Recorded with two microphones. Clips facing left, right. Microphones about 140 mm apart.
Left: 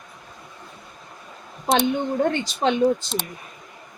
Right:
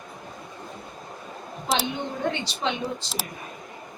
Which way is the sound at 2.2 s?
45° left (ahead or behind).